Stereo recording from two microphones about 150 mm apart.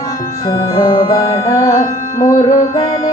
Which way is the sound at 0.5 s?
30° left (ahead or behind).